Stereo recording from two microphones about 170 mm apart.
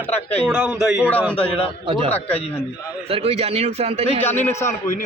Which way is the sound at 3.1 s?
35° right (ahead or behind).